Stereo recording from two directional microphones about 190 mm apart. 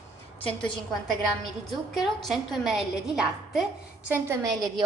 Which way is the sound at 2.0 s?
Centre (ahead or behind).